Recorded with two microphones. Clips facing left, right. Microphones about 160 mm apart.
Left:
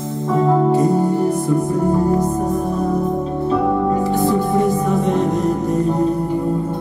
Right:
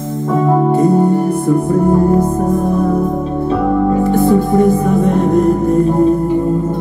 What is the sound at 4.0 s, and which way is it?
Music, 55° right (ahead or behind).